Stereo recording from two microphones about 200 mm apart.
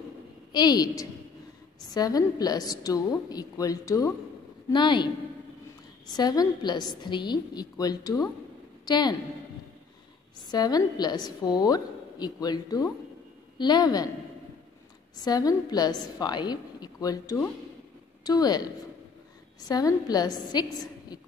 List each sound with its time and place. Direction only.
0.5 s a woman's voice: 20° left (ahead or behind)
6.1 s a woman's voice: 20° left (ahead or behind)
10.5 s a woman's voice: 20° left (ahead or behind)
15.1 s a woman's voice: 20° left (ahead or behind)